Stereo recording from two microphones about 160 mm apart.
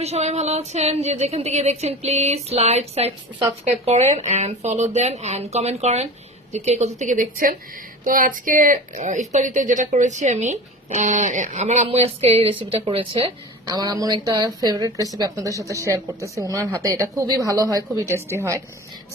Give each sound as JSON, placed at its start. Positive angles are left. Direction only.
{"t": 0.0, "sound": "a woman's voice", "side_deg": -40}
{"t": 13.7, "sound": "speech", "side_deg": -25}